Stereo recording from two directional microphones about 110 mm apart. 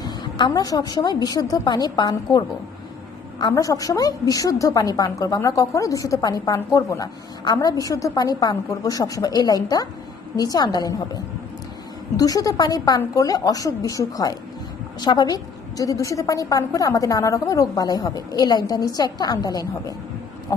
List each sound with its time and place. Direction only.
0.0 s a woman's voice: 40° left (ahead or behind)
12.2 s a woman's voice: 35° left (ahead or behind)